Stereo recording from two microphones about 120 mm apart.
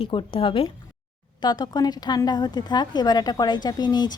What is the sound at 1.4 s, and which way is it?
Speech, 35° left (ahead or behind).